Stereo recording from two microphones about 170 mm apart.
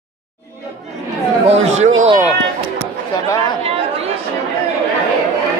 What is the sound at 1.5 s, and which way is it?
Speech, 40° right (ahead or behind).